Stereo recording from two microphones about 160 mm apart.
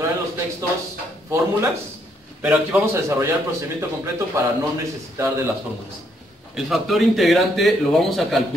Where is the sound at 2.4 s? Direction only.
10° right (ahead or behind).